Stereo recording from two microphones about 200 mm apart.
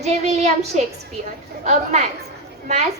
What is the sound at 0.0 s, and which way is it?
Speech, 35° right (ahead or behind).